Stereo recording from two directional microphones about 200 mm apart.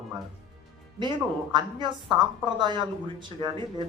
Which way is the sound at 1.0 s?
25° right (ahead or behind).